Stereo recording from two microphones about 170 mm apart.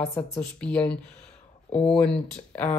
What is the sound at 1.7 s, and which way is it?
Speech, 35° left (ahead or behind).